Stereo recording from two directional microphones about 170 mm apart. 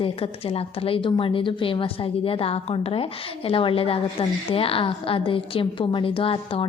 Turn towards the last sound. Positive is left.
turn(degrees=30)  # may be behind; listen again after turning